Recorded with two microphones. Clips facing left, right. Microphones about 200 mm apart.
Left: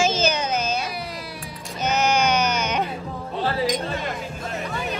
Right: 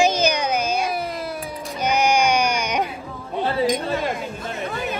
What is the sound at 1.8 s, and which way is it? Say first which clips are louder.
Music: right 2 dB; 10° right (ahead or behind).